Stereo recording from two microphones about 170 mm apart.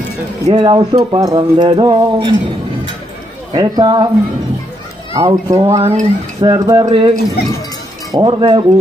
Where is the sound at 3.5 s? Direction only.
25° right (ahead or behind).